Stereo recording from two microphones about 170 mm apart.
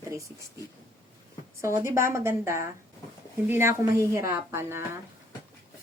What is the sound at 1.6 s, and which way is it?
Speech, 15° right (ahead or behind).